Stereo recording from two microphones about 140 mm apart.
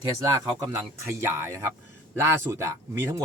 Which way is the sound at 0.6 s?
25° right (ahead or behind).